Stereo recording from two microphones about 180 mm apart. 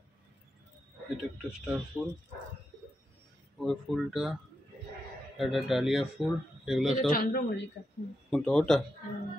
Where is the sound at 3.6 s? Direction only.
Centre (ahead or behind).